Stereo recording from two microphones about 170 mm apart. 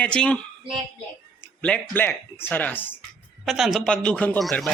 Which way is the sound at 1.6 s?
5° left (ahead or behind).